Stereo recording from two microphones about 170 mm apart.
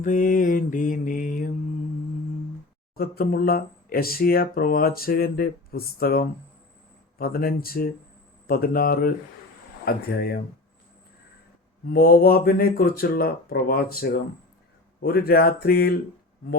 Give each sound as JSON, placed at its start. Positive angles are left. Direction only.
{"t": 0.0, "sound": "mantra", "side_deg": 50}
{"t": 2.9, "sound": "speech", "side_deg": 65}
{"t": 11.9, "sound": "speech", "side_deg": 65}